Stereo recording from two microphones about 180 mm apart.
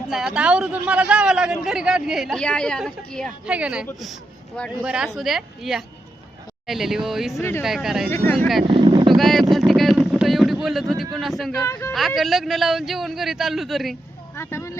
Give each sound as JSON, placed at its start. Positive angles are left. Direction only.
{"t": 0.1, "sound": "a man's voice", "side_deg": -5}
{"t": 8.6, "sound": "speech", "side_deg": -25}
{"t": 9.1, "sound": "a sound", "side_deg": 0}
{"t": 11.2, "sound": "a man's voice", "side_deg": 0}
{"t": 11.6, "sound": "speech", "side_deg": 15}
{"t": 11.9, "sound": "a man's voice", "side_deg": 0}
{"t": 14.3, "sound": "vehicle", "side_deg": 15}